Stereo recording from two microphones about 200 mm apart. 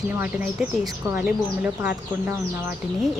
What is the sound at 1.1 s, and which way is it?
Speech, 10° right (ahead or behind).